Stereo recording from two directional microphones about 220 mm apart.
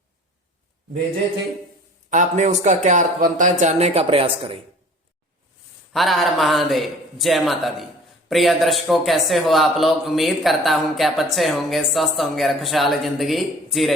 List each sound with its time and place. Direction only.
2.0 s a man's voice: 35° right (ahead or behind)
5.9 s a man's voice: centre (ahead or behind)